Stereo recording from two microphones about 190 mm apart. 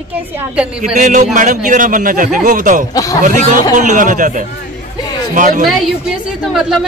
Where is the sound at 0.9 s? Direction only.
40° right (ahead or behind).